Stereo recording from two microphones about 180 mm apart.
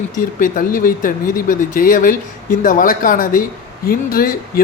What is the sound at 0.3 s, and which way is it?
Speech, 50° left (ahead or behind).